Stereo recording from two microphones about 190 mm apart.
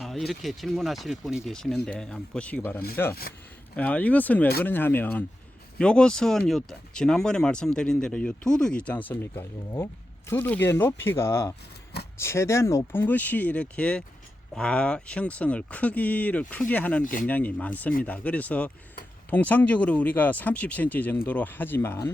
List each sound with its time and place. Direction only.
0.0 s speech: centre (ahead or behind)
17.0 s speech: 45° left (ahead or behind)
17.2 s speech: 10° left (ahead or behind)